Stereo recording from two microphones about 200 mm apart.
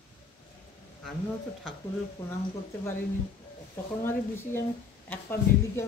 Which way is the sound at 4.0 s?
10° left (ahead or behind).